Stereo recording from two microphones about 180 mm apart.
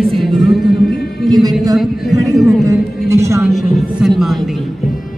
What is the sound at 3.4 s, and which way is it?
Speech, centre (ahead or behind).